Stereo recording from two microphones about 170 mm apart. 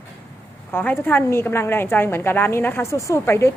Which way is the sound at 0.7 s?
10° left (ahead or behind).